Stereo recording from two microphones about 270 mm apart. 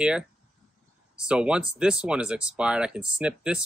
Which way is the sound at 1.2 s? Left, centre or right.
Centre.